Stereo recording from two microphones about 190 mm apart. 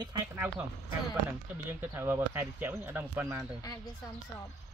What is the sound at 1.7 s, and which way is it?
Speech, 10° right (ahead or behind).